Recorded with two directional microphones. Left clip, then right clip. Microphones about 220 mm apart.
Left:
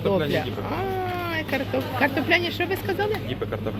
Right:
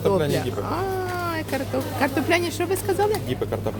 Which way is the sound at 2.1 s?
20° right (ahead or behind).